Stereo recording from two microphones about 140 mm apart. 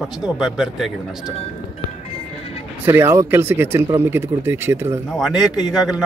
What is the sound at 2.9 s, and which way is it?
Speech, 15° right (ahead or behind).